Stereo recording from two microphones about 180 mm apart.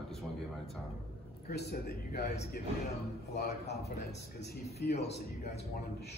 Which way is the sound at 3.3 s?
60° left (ahead or behind).